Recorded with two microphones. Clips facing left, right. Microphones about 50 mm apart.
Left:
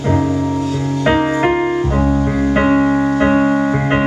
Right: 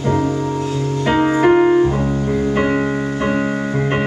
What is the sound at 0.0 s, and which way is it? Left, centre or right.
Music, centre.